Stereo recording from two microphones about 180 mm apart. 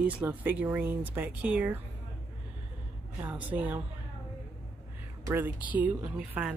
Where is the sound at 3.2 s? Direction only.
10° right (ahead or behind).